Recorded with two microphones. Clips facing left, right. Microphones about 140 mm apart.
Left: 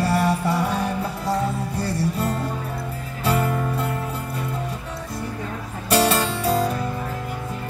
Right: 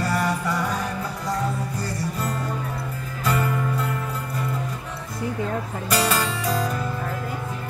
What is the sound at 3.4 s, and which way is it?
Music, 30° left (ahead or behind).